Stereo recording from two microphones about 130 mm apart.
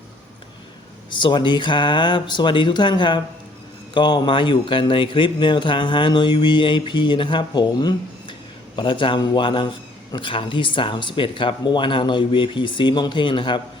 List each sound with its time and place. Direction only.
1.1 s speech: 40° left (ahead or behind)